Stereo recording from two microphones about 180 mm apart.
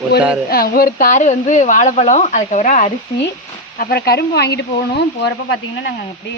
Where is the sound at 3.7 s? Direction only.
55° left (ahead or behind).